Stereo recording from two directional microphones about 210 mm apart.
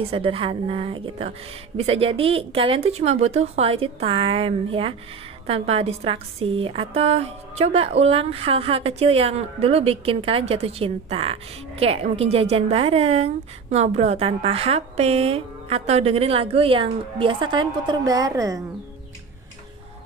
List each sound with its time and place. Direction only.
0.1 s a woman's voice: 25° right (ahead or behind)